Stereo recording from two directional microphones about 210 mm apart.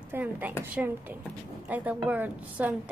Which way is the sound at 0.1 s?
10° right (ahead or behind).